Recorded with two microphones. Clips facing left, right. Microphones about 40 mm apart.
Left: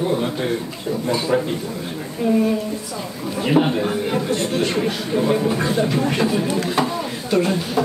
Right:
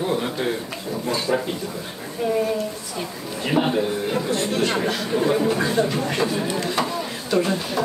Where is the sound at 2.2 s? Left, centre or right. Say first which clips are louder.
Left 4 dB; left.